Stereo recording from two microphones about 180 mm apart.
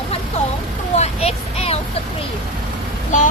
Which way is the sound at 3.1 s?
45° left (ahead or behind).